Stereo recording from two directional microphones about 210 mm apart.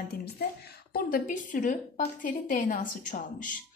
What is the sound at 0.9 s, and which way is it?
A woman's voice, 40° left (ahead or behind).